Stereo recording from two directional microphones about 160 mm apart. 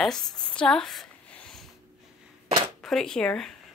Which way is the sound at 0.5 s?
5° left (ahead or behind).